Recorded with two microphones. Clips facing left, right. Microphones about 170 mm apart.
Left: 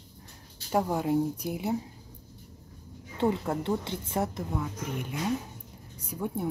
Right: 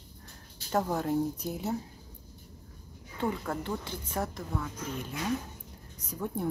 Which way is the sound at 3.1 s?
25° left (ahead or behind).